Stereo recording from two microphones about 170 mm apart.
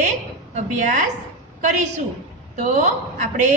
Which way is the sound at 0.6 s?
50° right (ahead or behind).